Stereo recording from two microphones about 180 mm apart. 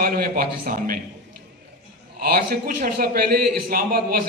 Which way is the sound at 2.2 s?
55° right (ahead or behind).